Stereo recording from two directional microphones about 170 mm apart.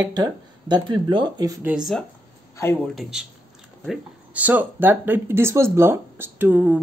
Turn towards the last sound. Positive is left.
turn(degrees=-10)  # may be behind; listen again after turning